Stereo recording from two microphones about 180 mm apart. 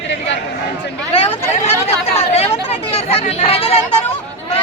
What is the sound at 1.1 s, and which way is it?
Chatter, 35° left (ahead or behind).